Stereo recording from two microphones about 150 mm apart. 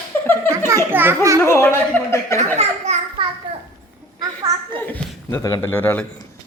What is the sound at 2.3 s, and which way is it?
Speech, 50° right (ahead or behind).